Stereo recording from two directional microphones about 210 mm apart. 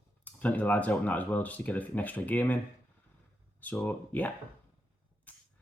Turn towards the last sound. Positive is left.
turn(degrees=5)  # may be behind; listen again after turning